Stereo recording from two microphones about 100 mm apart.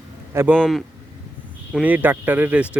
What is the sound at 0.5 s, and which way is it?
Speech, 5° left (ahead or behind).